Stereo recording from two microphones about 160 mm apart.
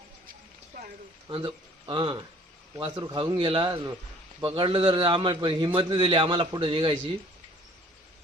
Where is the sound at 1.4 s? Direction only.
30° right (ahead or behind).